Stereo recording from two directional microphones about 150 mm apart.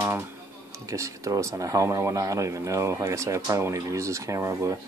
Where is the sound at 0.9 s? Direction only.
20° right (ahead or behind).